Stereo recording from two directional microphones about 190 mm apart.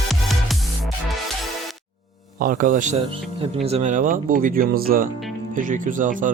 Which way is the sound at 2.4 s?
45° right (ahead or behind).